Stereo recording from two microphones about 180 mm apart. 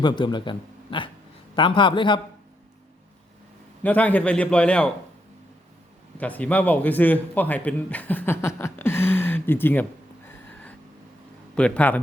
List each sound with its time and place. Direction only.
0.0 s a man's voice: 25° left (ahead or behind)
3.8 s a man's voice: 10° left (ahead or behind)
6.1 s a man's voice: 10° left (ahead or behind)
11.5 s a man's voice: 5° left (ahead or behind)